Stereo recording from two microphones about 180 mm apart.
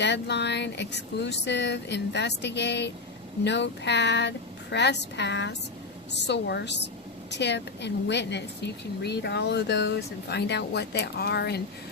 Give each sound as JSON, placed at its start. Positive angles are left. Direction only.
{"t": 0.0, "sound": "a woman's voice", "side_deg": 70}